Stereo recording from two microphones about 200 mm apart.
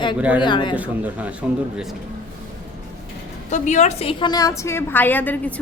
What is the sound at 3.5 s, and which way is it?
A woman's voice, 35° left (ahead or behind).